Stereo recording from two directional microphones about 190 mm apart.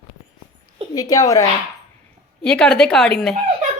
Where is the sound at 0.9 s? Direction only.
20° left (ahead or behind).